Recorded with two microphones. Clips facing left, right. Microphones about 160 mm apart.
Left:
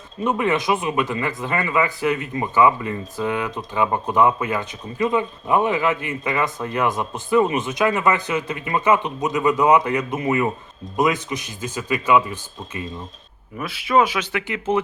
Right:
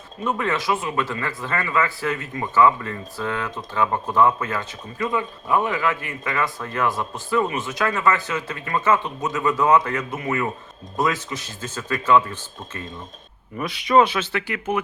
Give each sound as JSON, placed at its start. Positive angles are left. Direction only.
{"t": 0.3, "sound": "speech", "side_deg": 20}